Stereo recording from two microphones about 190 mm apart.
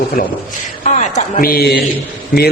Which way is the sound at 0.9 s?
40° left (ahead or behind).